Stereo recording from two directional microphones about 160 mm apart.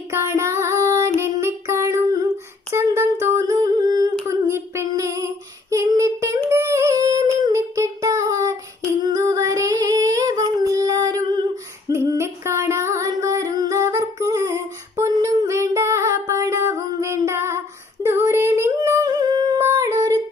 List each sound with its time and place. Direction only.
0.1 s music: 15° right (ahead or behind)
2.7 s humming: 15° right (ahead or behind)
9.0 s female singing: 25° right (ahead or behind)
11.9 s music: 15° right (ahead or behind)
18.0 s singing: 15° right (ahead or behind)